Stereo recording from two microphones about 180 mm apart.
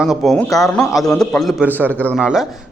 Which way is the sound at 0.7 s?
5° left (ahead or behind).